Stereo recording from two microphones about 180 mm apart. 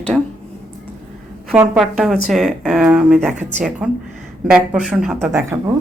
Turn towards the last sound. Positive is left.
turn(degrees=-15)  # may be behind; listen again after turning